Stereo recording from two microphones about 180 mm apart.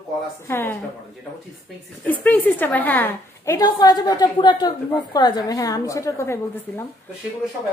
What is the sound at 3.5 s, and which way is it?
A woman's voice, 20° left (ahead or behind).